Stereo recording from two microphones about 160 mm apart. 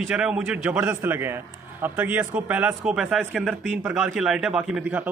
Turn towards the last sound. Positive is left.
turn(degrees=-10)  # may be behind; listen again after turning